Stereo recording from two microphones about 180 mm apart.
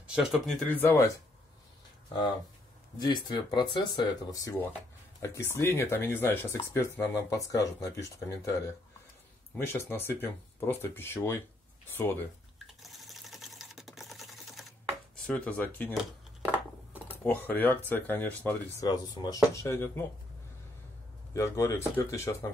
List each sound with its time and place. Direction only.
0.0 s speech: 5° right (ahead or behind)
0.7 s speech: 10° left (ahead or behind)
3.0 s speech: 25° left (ahead or behind)
12.8 s sewing machine: centre (ahead or behind)
15.2 s speech: 5° left (ahead or behind)
17.2 s speech: 10° left (ahead or behind)
21.3 s speech: 15° left (ahead or behind)